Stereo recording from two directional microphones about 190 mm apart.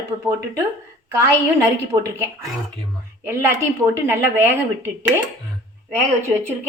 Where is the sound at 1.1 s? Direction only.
15° right (ahead or behind).